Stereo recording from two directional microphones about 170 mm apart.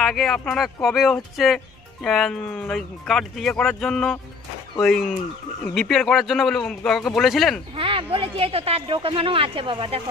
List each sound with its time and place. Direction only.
0.0 s speech: centre (ahead or behind)
7.7 s speech: 30° right (ahead or behind)